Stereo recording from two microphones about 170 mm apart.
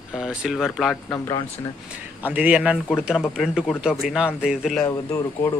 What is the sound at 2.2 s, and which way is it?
Speech, 10° right (ahead or behind).